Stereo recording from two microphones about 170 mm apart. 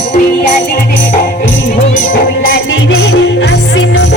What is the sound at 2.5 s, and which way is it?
Music, 70° left (ahead or behind).